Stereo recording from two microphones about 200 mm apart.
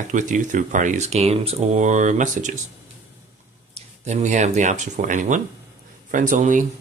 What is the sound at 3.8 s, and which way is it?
Speech, 35° right (ahead or behind).